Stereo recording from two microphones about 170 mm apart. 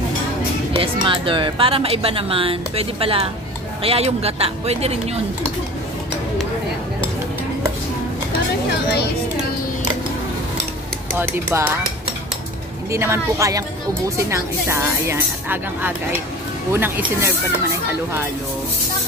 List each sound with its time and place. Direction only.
0.7 s a woman's voice: 30° right (ahead or behind)
11.1 s speech: 15° right (ahead or behind)
12.9 s speech: 15° right (ahead or behind)